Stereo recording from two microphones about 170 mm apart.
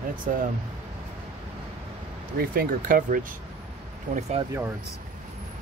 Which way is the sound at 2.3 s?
60° right (ahead or behind).